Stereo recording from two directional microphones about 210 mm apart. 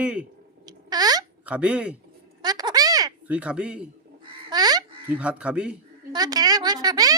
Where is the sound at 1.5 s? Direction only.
5° right (ahead or behind).